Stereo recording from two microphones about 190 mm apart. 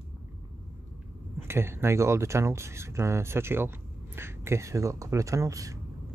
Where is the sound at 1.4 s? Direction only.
15° right (ahead or behind).